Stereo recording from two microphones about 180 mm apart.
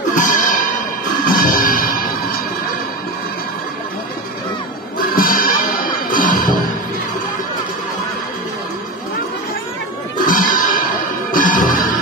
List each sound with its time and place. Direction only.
0.1 s music: 45° left (ahead or behind)
5.1 s music: 50° left (ahead or behind)
10.2 s music: 45° left (ahead or behind)